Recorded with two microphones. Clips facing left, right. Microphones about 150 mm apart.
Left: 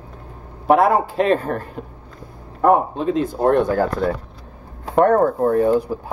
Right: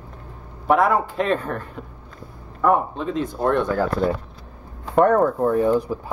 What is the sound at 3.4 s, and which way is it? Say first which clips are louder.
Speech: left 4 dB; 40° left (ahead or behind).